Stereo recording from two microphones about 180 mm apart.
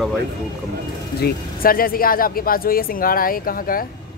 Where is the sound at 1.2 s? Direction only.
55° left (ahead or behind).